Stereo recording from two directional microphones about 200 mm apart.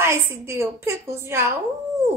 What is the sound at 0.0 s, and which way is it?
A woman's voice, 10° right (ahead or behind).